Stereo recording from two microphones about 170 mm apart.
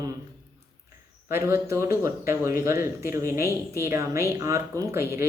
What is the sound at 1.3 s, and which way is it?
Speech, 15° right (ahead or behind).